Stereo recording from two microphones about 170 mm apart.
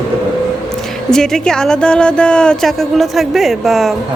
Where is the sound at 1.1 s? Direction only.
5° left (ahead or behind).